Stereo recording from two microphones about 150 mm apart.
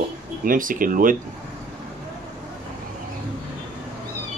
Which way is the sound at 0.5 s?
65° right (ahead or behind).